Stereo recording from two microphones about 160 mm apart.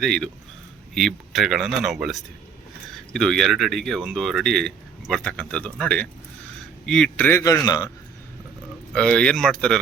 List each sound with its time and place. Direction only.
0.0 s a man's voice: 5° left (ahead or behind); by 7.9 s 25° left (ahead or behind)
8.9 s speech: 5° left (ahead or behind)